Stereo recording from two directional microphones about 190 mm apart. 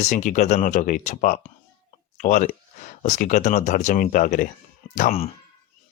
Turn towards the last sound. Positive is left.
turn(degrees=45)  # may be behind; listen again after turning